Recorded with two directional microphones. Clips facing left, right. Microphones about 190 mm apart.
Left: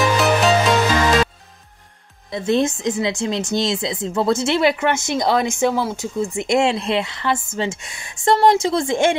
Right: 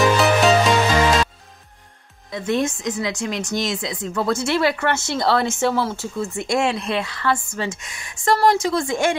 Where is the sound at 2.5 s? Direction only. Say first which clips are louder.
Left 3 dB; 25° left (ahead or behind).